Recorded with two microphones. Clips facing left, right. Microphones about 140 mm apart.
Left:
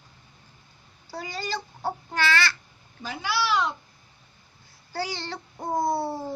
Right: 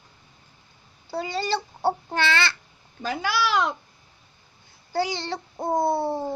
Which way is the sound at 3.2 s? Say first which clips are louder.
Right 1 dB; 50° right (ahead or behind).